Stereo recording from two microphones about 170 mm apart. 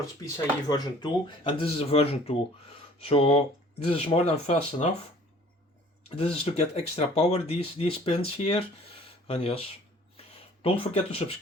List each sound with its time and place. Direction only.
0.7 s speech: 30° left (ahead or behind)
6.1 s speech: 35° left (ahead or behind)
10.2 s a sound: 35° left (ahead or behind)